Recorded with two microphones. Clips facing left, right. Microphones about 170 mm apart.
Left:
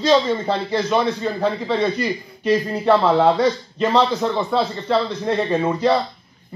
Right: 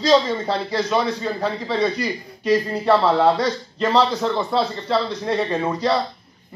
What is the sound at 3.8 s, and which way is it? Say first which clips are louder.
A man's voice: left 1 dB; 5° left (ahead or behind).